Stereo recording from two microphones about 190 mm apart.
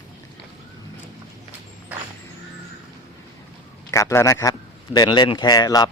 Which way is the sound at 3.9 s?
15° left (ahead or behind).